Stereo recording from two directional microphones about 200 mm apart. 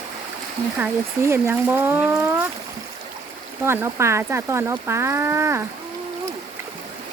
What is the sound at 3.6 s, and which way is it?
Speech, 15° right (ahead or behind).